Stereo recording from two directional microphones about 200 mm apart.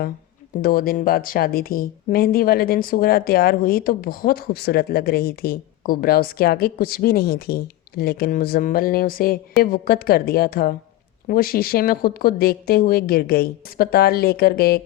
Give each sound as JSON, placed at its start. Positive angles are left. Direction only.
{"t": 0.6, "sound": "speech", "side_deg": 45}